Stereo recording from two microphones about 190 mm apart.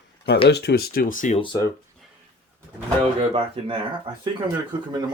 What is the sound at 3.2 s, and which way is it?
Speech, 30° right (ahead or behind).